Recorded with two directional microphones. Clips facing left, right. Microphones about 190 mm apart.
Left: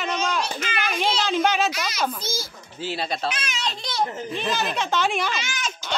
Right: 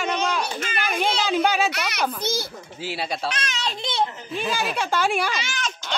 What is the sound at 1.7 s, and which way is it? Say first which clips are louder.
Speech: right 1 dB; 65° right (ahead or behind).